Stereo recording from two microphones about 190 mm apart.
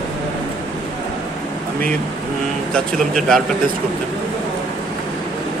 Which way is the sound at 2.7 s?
Centre (ahead or behind).